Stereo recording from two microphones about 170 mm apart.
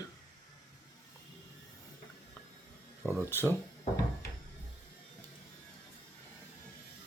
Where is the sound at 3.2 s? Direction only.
15° left (ahead or behind).